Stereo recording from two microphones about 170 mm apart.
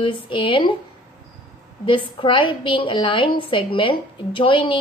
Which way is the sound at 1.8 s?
30° left (ahead or behind).